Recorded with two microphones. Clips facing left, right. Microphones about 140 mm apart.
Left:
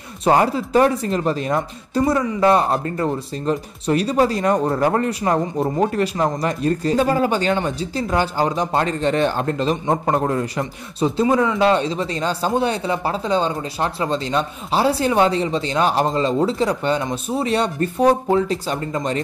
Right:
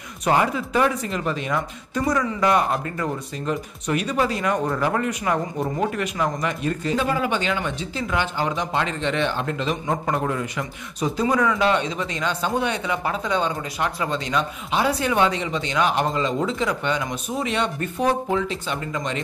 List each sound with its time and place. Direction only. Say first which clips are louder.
0.2 s speech: left 4 dB; 35° left (ahead or behind)